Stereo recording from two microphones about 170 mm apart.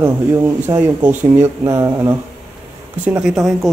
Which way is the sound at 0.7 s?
10° right (ahead or behind).